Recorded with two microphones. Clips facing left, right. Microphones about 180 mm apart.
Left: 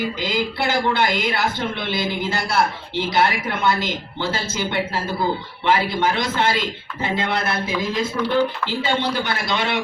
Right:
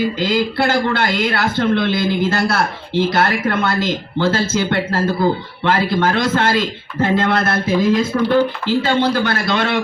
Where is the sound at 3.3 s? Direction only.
55° right (ahead or behind).